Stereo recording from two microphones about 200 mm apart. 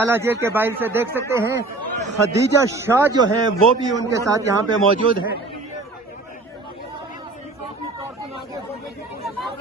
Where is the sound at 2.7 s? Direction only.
10° right (ahead or behind).